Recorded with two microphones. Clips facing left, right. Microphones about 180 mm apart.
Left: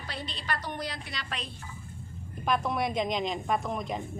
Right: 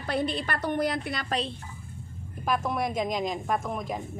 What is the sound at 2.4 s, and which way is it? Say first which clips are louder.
A woman's voice: right 1 dB; centre (ahead or behind).